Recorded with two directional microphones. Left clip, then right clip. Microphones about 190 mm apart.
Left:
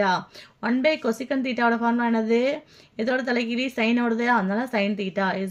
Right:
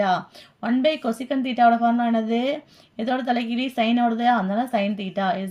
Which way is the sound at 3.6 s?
25° left (ahead or behind).